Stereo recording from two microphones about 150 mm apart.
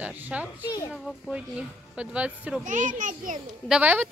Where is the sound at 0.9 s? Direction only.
Centre (ahead or behind).